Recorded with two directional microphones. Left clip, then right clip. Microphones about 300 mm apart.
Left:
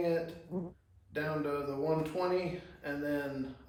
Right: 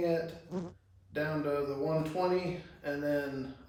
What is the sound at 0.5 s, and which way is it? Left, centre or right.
Speech, left.